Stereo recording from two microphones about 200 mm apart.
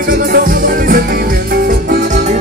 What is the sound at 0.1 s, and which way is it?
Music, 45° right (ahead or behind).